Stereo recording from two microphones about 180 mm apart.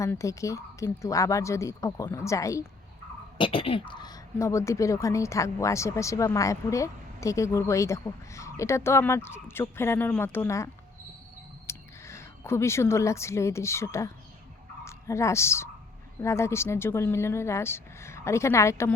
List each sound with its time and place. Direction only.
0.0 s speech: 15° left (ahead or behind)
3.3 s a woman's voice: 30° left (ahead or behind)